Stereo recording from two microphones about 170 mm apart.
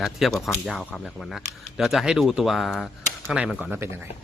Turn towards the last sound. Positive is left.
turn(degrees=-5)  # may be behind; listen again after turning